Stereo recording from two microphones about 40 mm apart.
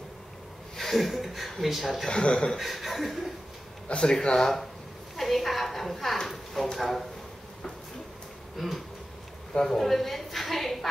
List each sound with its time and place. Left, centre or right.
0.7 s speech: centre
2.0 s speech: left
2.5 s speech: centre
4.0 s speech: centre
5.1 s a woman's voice: centre
8.5 s speech: centre